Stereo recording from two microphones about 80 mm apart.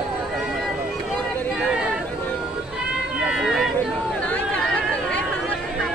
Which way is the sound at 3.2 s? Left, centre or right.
Centre.